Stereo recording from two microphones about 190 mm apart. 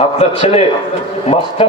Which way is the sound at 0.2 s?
35° left (ahead or behind).